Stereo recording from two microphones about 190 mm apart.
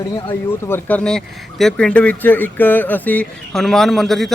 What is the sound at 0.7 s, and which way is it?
Speech, 10° left (ahead or behind).